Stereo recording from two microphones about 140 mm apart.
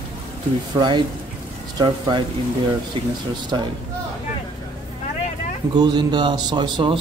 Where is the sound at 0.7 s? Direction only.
35° right (ahead or behind).